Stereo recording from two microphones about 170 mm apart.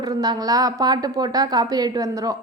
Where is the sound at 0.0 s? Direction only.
25° right (ahead or behind).